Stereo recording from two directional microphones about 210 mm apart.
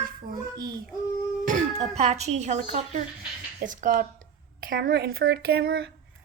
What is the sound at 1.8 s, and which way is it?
Speech, 30° right (ahead or behind).